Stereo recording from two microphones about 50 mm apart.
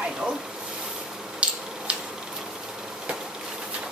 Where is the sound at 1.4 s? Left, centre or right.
Right.